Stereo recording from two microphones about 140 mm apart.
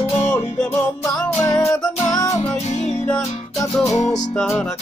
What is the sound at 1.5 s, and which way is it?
Music, 25° left (ahead or behind).